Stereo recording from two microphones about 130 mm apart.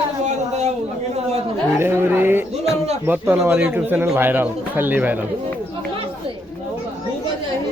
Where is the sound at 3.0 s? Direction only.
20° right (ahead or behind).